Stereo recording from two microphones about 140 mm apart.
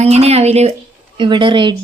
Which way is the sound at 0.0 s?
50° right (ahead or behind).